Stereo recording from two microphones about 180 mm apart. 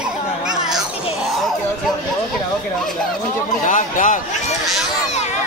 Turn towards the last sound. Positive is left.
turn(degrees=45)  # may be behind; listen again after turning